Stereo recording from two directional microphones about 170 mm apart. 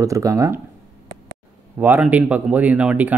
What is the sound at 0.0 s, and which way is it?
Speech, 20° right (ahead or behind).